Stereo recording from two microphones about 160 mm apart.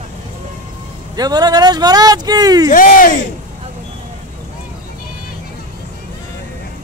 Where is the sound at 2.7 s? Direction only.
60° left (ahead or behind).